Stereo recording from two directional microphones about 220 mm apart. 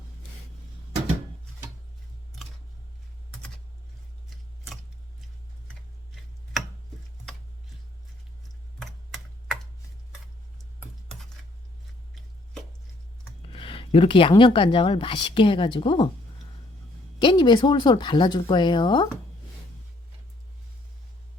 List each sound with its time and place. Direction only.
5.6 s tick-tock: centre (ahead or behind)
8.8 s typing: centre (ahead or behind)
13.5 s speech: 25° left (ahead or behind)
17.2 s speech: 20° left (ahead or behind)